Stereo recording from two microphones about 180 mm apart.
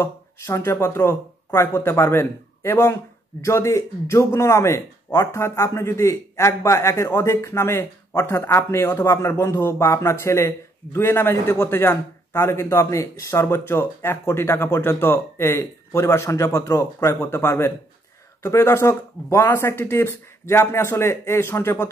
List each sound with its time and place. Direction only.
0.0 s speech: 15° left (ahead or behind)